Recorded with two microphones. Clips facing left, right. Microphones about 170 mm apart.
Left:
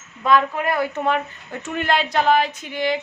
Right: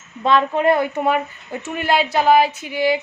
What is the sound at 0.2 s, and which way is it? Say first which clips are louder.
Speech: right 2 dB; 25° right (ahead or behind).